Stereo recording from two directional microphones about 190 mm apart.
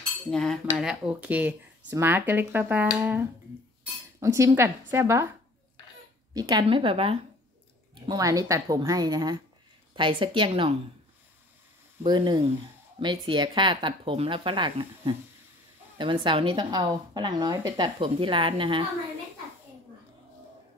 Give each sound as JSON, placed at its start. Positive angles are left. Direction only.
{"t": 0.3, "sound": "cutlery", "side_deg": 5}
{"t": 0.7, "sound": "a woman's voice", "side_deg": -5}
{"t": 6.3, "sound": "speech", "side_deg": -20}
{"t": 12.0, "sound": "speech", "side_deg": -25}